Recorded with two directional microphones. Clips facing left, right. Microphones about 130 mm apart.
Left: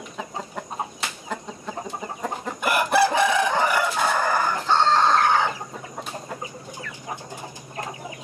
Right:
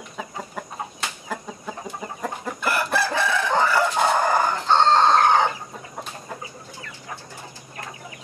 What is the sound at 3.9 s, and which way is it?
Chicken, 25° right (ahead or behind).